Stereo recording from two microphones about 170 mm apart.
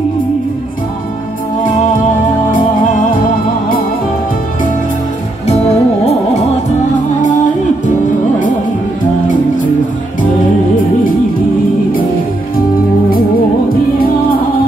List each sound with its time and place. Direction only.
5.5 s music: 40° left (ahead or behind)